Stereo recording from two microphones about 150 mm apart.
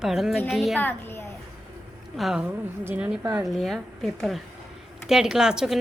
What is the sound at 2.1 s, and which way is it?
Speech, 5° right (ahead or behind).